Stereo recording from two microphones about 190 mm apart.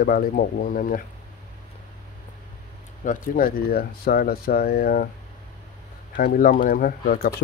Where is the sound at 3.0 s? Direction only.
45° left (ahead or behind).